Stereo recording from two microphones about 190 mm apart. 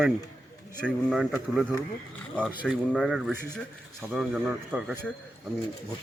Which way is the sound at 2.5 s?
5° right (ahead or behind).